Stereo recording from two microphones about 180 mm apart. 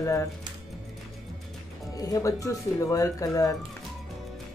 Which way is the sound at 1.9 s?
20° left (ahead or behind).